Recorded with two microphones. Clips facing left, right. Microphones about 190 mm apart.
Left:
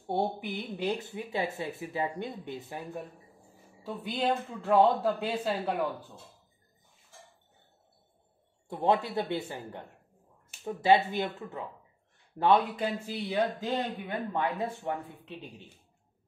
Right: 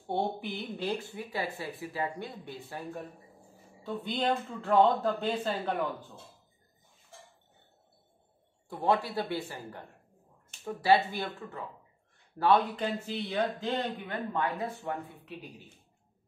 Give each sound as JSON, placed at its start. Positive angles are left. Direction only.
{"t": 0.0, "sound": "speech", "side_deg": 10}
{"t": 3.8, "sound": "speech", "side_deg": 5}
{"t": 8.6, "sound": "speech", "side_deg": 20}
{"t": 12.5, "sound": "speech", "side_deg": 10}